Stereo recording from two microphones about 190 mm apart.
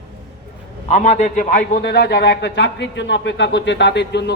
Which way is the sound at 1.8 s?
60° left (ahead or behind).